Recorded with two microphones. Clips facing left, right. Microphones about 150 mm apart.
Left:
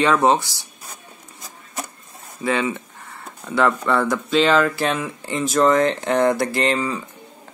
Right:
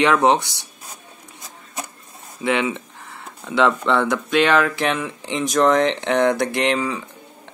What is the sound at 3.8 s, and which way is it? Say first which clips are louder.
Speech: right 1 dB; centre (ahead or behind).